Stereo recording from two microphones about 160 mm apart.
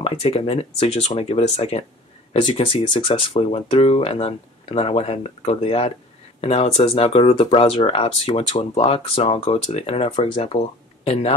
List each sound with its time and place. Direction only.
0.0 s speech: 35° left (ahead or behind)